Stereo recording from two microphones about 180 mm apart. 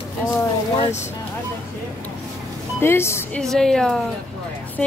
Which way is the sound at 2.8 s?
15° left (ahead or behind).